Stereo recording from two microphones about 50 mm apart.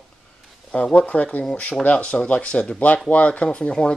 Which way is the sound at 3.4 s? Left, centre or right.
Centre.